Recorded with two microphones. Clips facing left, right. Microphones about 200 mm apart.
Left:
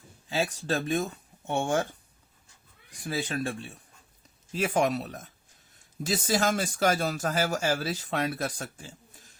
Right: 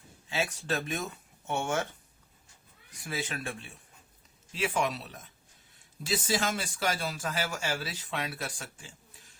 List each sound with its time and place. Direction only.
0.3 s speech: 35° left (ahead or behind)
3.0 s speech: 35° left (ahead or behind)